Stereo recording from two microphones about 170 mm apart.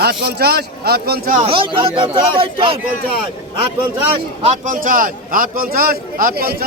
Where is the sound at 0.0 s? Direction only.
70° right (ahead or behind).